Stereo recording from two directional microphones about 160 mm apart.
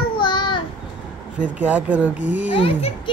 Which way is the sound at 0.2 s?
30° left (ahead or behind).